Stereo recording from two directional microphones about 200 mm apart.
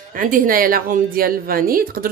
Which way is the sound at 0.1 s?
45° right (ahead or behind).